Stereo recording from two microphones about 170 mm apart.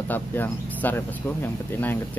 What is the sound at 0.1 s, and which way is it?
Speech, 10° left (ahead or behind).